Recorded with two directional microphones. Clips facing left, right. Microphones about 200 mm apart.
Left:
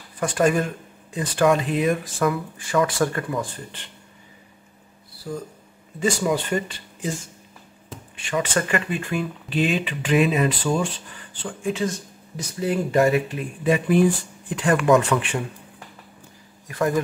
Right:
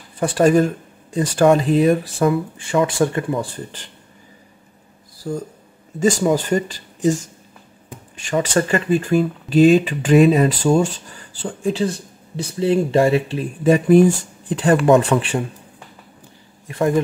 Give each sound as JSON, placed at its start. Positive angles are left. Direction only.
{"t": 0.2, "sound": "speech", "side_deg": -35}
{"t": 5.2, "sound": "speech", "side_deg": -35}
{"t": 8.2, "sound": "speech", "side_deg": -40}
{"t": 16.6, "sound": "speech", "side_deg": -25}